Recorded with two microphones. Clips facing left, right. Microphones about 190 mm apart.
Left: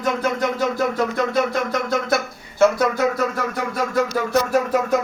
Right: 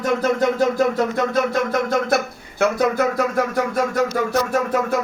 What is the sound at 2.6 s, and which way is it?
Speech, 55° right (ahead or behind).